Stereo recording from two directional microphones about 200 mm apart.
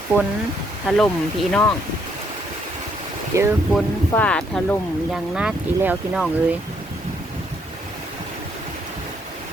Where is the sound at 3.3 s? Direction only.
15° right (ahead or behind).